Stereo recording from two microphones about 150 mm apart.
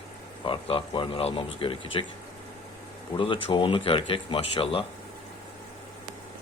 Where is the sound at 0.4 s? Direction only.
35° left (ahead or behind).